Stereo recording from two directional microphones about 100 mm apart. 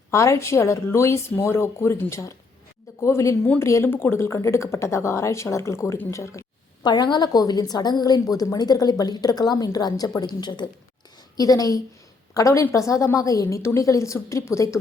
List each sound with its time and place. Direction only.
0.1 s a woman's voice: 30° left (ahead or behind)
6.8 s a woman's voice: 45° left (ahead or behind); by 14.8 s 30° left (ahead or behind)